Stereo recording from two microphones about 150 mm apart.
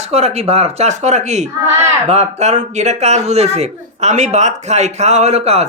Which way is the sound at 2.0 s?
50° right (ahead or behind).